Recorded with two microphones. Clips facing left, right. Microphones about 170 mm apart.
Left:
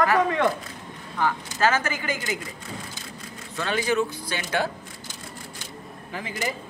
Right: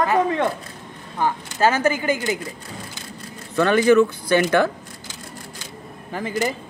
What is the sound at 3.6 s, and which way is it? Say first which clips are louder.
Speech: right 10 dB; 60° right (ahead or behind).